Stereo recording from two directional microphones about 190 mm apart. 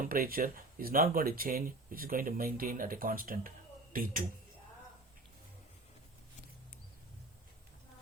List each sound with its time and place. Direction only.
0.0 s speech: 50° right (ahead or behind)